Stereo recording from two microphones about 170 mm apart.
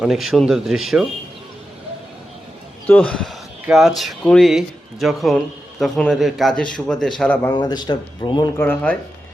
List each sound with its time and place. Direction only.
0.0 s speech: centre (ahead or behind)
2.8 s speech: 10° left (ahead or behind)
7.5 s speech: 25° left (ahead or behind)
8.5 s speech: 10° left (ahead or behind)